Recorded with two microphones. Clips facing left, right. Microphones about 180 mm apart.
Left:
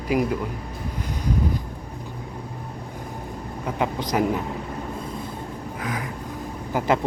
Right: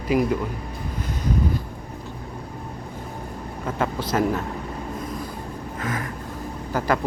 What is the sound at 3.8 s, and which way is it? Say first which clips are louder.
Speech: even; 15° left (ahead or behind).